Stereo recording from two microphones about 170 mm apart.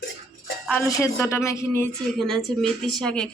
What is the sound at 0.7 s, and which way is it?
Speech, 20° left (ahead or behind).